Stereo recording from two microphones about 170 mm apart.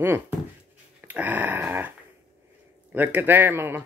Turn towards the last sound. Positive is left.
turn(degrees=-10)  # may be behind; listen again after turning